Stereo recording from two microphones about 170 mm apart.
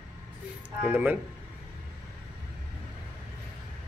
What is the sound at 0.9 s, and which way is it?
Speech, 10° right (ahead or behind).